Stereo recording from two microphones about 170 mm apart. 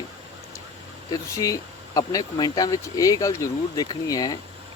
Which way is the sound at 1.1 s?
20° left (ahead or behind).